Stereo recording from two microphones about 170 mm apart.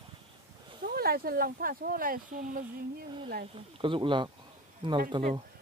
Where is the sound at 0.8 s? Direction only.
60° right (ahead or behind).